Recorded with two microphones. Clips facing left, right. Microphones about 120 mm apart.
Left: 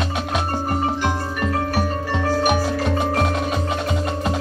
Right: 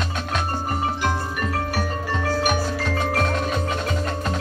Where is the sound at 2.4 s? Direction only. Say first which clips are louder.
Left 4 dB; 15° left (ahead or behind).